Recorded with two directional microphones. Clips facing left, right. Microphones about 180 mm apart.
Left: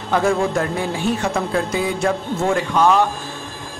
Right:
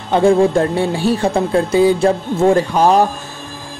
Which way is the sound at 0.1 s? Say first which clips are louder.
Right 6 dB; 30° right (ahead or behind).